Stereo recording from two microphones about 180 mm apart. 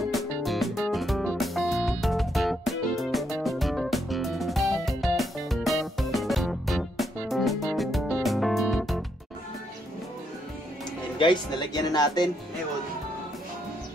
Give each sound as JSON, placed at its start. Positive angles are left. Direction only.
{"t": 0.0, "sound": "music", "side_deg": 0}
{"t": 11.1, "sound": "speech", "side_deg": 25}